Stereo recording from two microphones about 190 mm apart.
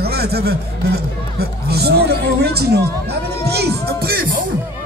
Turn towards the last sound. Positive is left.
turn(degrees=-50)  # may be behind; listen again after turning